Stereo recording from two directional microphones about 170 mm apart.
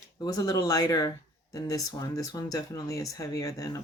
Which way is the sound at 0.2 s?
20° left (ahead or behind).